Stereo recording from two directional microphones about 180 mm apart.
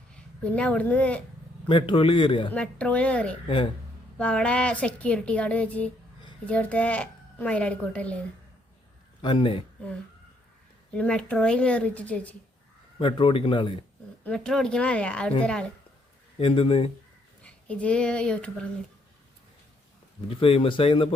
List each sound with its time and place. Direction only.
0.1 s a child's voice: 5° left (ahead or behind)
1.6 s a man's voice: 30° left (ahead or behind)
2.5 s a woman's voice: 5° left (ahead or behind)
9.2 s a man's voice: 30° left (ahead or behind)
10.9 s a woman's voice: 5° left (ahead or behind)
13.0 s a man's voice: 30° left (ahead or behind)
14.3 s speech: 5° left (ahead or behind)
16.4 s speech: 30° left (ahead or behind)
17.4 s speech: 5° left (ahead or behind)
20.2 s speech: 30° left (ahead or behind)